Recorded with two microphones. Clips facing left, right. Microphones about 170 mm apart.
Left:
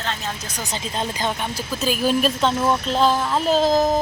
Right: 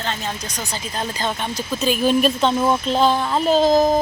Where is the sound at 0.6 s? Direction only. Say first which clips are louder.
Left 2 dB; 20° left (ahead or behind).